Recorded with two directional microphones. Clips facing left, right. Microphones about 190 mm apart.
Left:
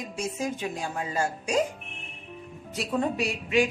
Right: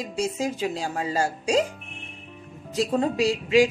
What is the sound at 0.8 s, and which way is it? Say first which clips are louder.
Speech: right 2 dB; 35° right (ahead or behind).